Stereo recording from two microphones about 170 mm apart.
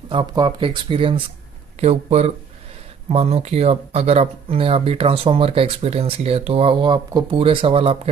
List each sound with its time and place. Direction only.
0.1 s speech: 30° right (ahead or behind)